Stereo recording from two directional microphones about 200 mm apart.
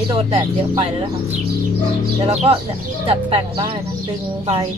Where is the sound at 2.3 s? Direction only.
30° right (ahead or behind).